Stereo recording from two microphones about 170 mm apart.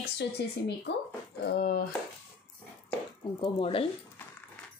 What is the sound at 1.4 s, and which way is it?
Speech, 70° left (ahead or behind).